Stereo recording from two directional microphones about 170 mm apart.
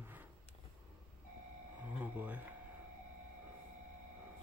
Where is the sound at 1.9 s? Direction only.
10° right (ahead or behind).